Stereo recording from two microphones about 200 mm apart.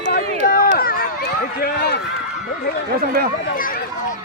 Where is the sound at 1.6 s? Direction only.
50° left (ahead or behind).